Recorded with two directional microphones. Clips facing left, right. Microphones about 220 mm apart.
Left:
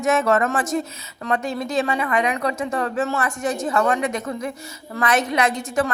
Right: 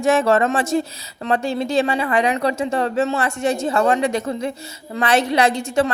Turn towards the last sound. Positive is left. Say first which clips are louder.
# right 3 dB
turn(degrees=-30)  # may be behind; listen again after turning